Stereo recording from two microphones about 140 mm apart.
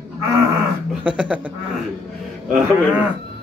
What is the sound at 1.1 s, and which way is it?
Speech, 10° right (ahead or behind).